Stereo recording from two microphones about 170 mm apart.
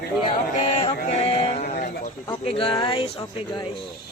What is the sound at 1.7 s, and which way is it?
Speech, 55° left (ahead or behind).